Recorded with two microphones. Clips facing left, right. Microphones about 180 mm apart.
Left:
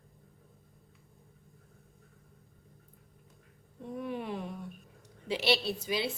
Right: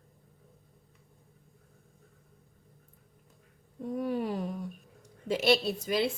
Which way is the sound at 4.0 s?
40° right (ahead or behind).